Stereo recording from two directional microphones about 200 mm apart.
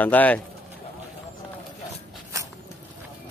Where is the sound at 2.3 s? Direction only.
15° right (ahead or behind).